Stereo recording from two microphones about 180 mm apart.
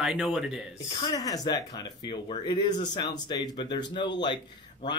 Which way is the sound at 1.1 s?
20° left (ahead or behind).